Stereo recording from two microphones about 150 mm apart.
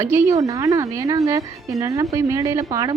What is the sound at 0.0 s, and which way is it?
A woman's voice, 20° right (ahead or behind).